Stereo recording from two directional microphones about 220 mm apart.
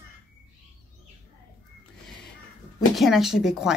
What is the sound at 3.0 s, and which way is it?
Speech, centre (ahead or behind).